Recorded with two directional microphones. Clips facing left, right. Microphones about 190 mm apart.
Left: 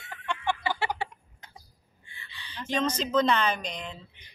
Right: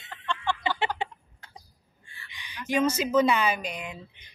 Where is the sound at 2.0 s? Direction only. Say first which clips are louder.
Even; 20° left (ahead or behind).